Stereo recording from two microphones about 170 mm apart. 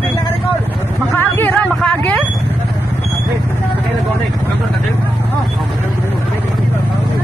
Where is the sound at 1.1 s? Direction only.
10° left (ahead or behind).